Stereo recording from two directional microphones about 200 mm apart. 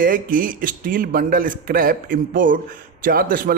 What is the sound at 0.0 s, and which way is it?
A man's voice, 45° right (ahead or behind).